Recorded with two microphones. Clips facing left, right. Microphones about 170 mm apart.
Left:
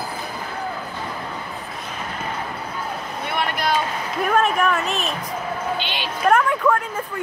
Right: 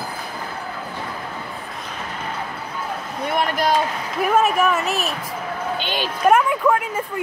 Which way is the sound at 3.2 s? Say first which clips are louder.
Right 4 dB; 40° right (ahead or behind).